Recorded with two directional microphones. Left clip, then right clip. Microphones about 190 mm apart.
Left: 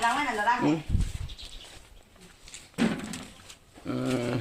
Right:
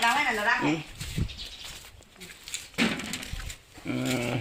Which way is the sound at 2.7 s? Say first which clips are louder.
Right 2 dB; 15° left (ahead or behind).